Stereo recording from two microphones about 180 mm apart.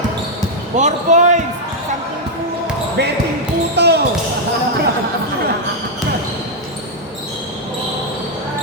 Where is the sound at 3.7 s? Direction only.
65° right (ahead or behind).